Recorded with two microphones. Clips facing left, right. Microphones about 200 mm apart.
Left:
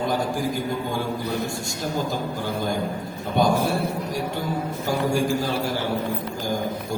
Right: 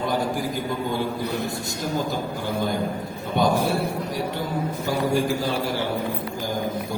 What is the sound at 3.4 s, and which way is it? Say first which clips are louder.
Speech: left 1 dB; 45° left (ahead or behind).